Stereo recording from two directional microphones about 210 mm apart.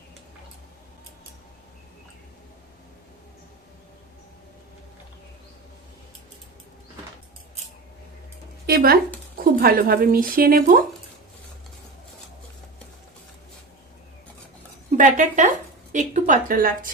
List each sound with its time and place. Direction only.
8.6 s speech: 45° right (ahead or behind)
14.9 s a woman's voice: 35° right (ahead or behind)